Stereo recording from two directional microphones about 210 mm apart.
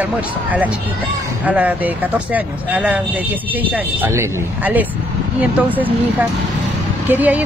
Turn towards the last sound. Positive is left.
turn(degrees=-10)  # may be behind; listen again after turning